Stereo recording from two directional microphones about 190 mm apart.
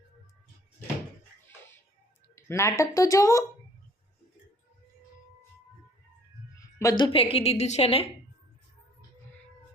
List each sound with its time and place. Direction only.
2.3 s a woman's voice: 15° left (ahead or behind)
6.6 s a woman's voice: 15° left (ahead or behind)